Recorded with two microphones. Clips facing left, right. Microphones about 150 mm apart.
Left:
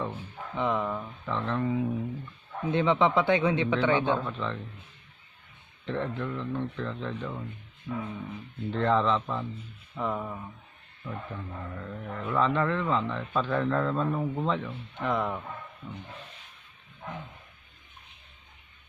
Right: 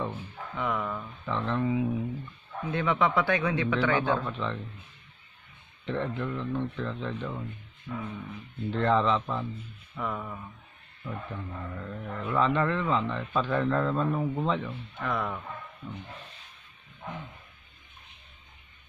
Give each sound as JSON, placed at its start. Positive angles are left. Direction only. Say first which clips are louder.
{"t": 0.6, "sound": "a man's voice", "louder": "left 3 dB", "side_deg": 20}
{"t": 1.2, "sound": "speech", "louder": "right 1 dB", "side_deg": 0}
{"t": 2.7, "sound": "a man's voice", "louder": "left 3 dB", "side_deg": 20}
{"t": 4.2, "sound": "speech", "louder": "even", "side_deg": 0}
{"t": 5.9, "sound": "speech", "louder": "even", "side_deg": 0}
{"t": 7.9, "sound": "a man's voice", "louder": "left 3 dB", "side_deg": 20}
{"t": 8.7, "sound": "speech", "louder": "even", "side_deg": 0}
{"t": 9.9, "sound": "a man's voice", "louder": "left 3 dB", "side_deg": 20}
{"t": 11.1, "sound": "speech", "louder": "even", "side_deg": 0}
{"t": 15.0, "sound": "a man's voice", "louder": "left 3 dB", "side_deg": 20}